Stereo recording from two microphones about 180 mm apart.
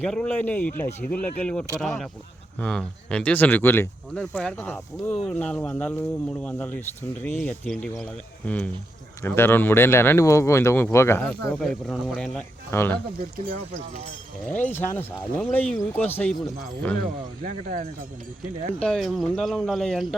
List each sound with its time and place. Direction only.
0.0 s speech: 5° left (ahead or behind)
13.5 s speech: 50° right (ahead or behind)
14.7 s speech: 10° left (ahead or behind)
17.4 s speech: 50° right (ahead or behind)
18.8 s speech: centre (ahead or behind)